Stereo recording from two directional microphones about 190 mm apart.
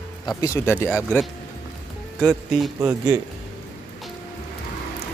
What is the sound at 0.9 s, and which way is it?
Speech, 5° right (ahead or behind).